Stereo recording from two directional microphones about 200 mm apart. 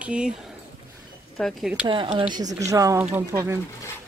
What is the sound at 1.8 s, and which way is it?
Speech, 25° right (ahead or behind).